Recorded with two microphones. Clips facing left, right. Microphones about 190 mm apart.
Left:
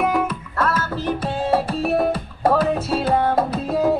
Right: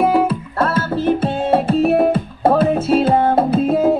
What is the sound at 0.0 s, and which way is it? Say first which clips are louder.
Music: right 6 dB; 30° right (ahead or behind).